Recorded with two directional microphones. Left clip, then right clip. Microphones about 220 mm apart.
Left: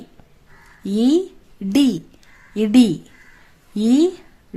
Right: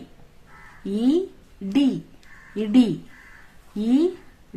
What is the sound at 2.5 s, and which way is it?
A woman's voice, 50° left (ahead or behind).